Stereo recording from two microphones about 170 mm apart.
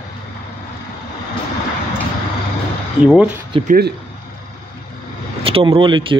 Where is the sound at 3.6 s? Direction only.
70° right (ahead or behind).